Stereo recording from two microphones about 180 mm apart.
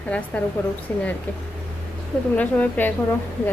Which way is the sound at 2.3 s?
10° left (ahead or behind).